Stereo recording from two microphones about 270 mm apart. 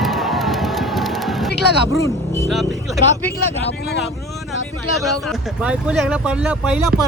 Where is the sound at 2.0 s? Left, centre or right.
Centre.